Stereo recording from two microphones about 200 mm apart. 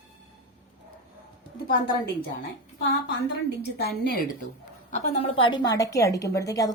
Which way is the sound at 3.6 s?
55° left (ahead or behind).